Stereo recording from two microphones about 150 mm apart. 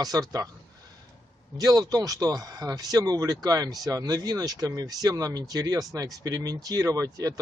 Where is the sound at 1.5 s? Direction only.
25° right (ahead or behind).